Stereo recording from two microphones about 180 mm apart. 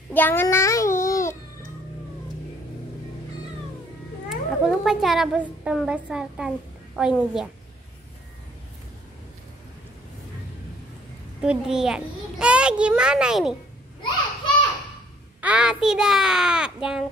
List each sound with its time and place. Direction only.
0.1 s a child's voice: 10° left (ahead or behind)
4.3 s speech: centre (ahead or behind)
11.4 s speech: 5° right (ahead or behind)
15.4 s speech: 5° right (ahead or behind)